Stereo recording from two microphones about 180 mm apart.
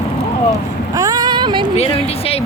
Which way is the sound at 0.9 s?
20° right (ahead or behind).